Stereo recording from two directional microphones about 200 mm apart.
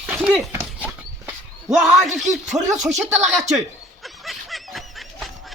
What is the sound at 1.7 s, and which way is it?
Speech, centre (ahead or behind).